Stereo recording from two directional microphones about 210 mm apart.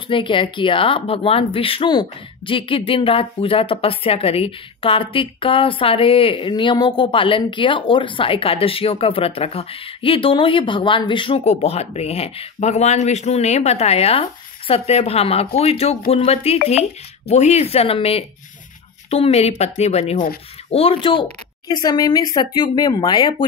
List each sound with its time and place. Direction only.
0.1 s speech: 25° left (ahead or behind)